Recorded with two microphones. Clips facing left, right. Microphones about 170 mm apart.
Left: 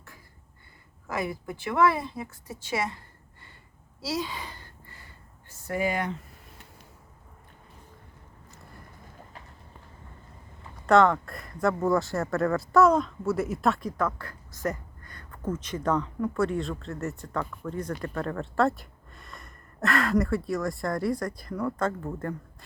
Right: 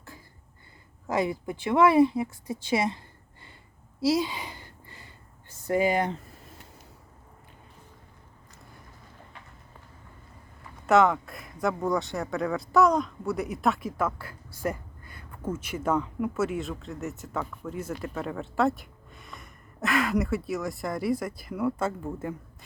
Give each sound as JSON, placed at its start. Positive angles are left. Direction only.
{"t": 1.0, "sound": "a woman's voice", "side_deg": -20}
{"t": 4.2, "sound": "a sound", "side_deg": -15}
{"t": 5.6, "sound": "speech", "side_deg": -20}
{"t": 10.8, "sound": "speech", "side_deg": -5}